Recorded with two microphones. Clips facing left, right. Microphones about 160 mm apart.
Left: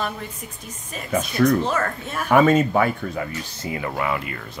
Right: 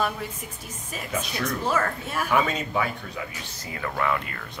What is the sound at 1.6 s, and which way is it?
Speech, 5° right (ahead or behind).